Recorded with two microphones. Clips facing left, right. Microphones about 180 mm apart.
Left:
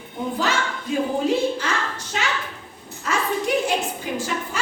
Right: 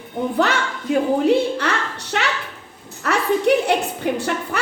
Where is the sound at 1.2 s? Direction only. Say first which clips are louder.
Right 4 dB; 65° right (ahead or behind).